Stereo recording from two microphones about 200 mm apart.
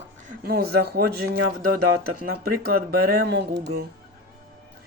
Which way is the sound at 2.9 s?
55° right (ahead or behind).